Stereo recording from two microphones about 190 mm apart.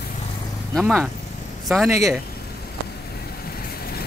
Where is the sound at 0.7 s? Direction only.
Centre (ahead or behind).